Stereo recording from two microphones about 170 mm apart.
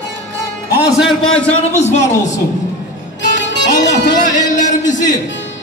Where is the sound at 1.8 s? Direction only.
45° left (ahead or behind).